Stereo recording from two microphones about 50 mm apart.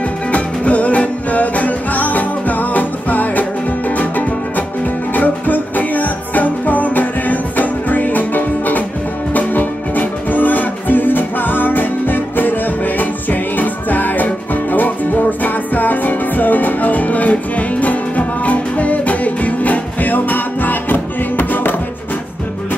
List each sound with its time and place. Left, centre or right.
0.3 s music: left